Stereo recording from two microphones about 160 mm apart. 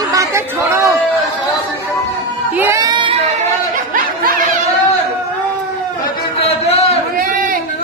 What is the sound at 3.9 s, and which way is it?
Snicker, 60° right (ahead or behind).